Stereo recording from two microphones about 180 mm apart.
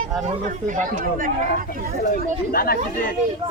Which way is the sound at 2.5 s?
55° left (ahead or behind).